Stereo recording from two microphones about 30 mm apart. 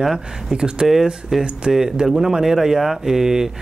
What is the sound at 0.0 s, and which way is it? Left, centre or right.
Speech, centre.